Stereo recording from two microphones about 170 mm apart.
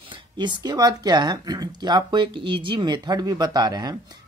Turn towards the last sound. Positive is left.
turn(degrees=-25)  # may be behind; listen again after turning